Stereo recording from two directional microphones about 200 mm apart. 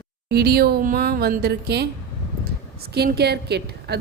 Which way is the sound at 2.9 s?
55° right (ahead or behind).